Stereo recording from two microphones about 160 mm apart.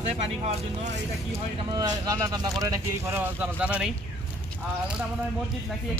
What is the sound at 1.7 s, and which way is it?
Speech, 25° right (ahead or behind).